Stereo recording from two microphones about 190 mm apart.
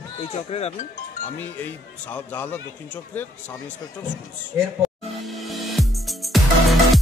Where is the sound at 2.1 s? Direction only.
10° left (ahead or behind).